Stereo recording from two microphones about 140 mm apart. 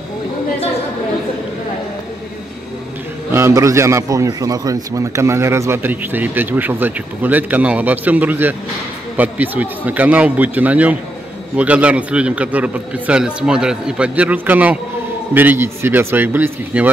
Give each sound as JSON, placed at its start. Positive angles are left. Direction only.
{"t": 3.3, "sound": "a man's voice", "side_deg": -20}